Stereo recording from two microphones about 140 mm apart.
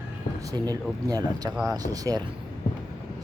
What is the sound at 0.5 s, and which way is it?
Speech, 30° right (ahead or behind).